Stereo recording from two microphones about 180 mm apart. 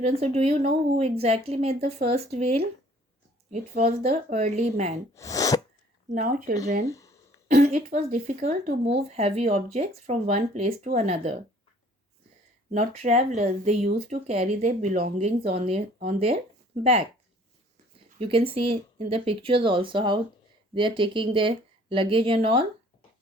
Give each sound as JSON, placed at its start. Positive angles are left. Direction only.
{"t": 0.0, "sound": "speech", "side_deg": -35}
{"t": 5.1, "sound": "speech", "side_deg": 20}
{"t": 6.1, "sound": "speech", "side_deg": -50}
{"t": 6.8, "sound": "a sound", "side_deg": 15}
{"t": 7.5, "sound": "speech", "side_deg": -40}
{"t": 12.7, "sound": "speech", "side_deg": -40}
{"t": 15.5, "sound": "speech", "side_deg": -35}
{"t": 18.2, "sound": "speech", "side_deg": -30}